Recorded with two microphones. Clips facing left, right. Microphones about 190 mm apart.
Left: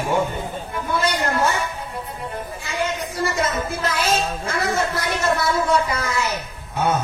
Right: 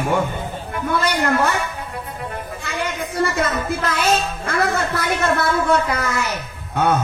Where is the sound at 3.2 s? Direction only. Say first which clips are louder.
Right 2 dB; 55° right (ahead or behind).